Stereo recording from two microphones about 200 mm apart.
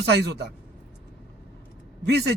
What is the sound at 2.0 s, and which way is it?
Speech, 55° right (ahead or behind).